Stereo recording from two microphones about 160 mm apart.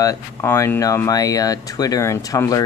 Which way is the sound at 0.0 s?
20° left (ahead or behind).